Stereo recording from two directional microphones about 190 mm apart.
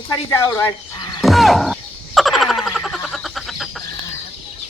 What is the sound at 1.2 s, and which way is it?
Frog, centre (ahead or behind).